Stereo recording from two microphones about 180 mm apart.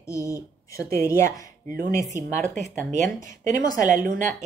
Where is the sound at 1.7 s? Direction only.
50° right (ahead or behind).